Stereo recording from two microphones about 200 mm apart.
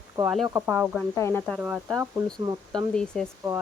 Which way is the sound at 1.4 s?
5° right (ahead or behind).